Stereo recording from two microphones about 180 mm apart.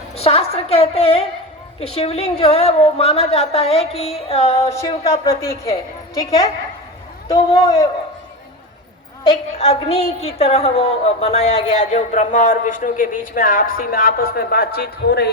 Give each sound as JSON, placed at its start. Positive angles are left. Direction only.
{"t": 0.2, "sound": "a sound", "side_deg": 35}
{"t": 2.0, "sound": "a woman's voice", "side_deg": 35}
{"t": 4.7, "sound": "a man's voice", "side_deg": 15}
{"t": 9.6, "sound": "a woman's voice", "side_deg": 35}